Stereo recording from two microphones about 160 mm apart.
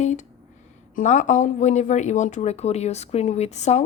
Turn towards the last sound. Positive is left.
turn(degrees=45)  # may be behind; listen again after turning